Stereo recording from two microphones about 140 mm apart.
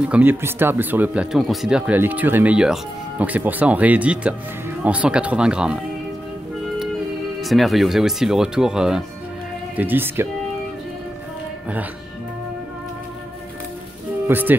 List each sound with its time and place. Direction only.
0.1 s speech: 15° right (ahead or behind)
7.4 s speech: centre (ahead or behind)
14.2 s speech: 15° right (ahead or behind)